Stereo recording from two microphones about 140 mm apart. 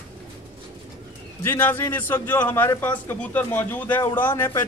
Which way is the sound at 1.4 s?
15° left (ahead or behind).